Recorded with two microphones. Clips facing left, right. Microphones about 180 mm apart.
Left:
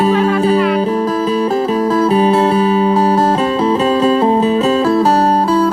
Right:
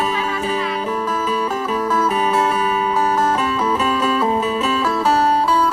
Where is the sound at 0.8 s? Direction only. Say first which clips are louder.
Left 7 dB; 35° left (ahead or behind).